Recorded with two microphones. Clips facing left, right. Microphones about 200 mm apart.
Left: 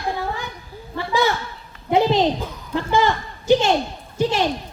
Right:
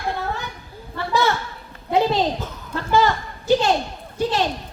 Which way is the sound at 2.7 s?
15° left (ahead or behind).